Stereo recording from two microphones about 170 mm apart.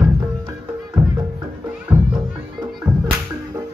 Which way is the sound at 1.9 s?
15° right (ahead or behind).